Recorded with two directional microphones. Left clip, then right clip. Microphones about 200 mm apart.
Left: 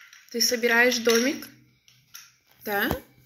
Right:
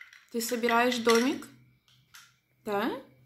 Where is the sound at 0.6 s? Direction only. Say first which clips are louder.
Left 4 dB; 20° right (ahead or behind).